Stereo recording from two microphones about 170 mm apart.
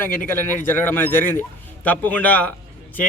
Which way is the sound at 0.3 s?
15° left (ahead or behind).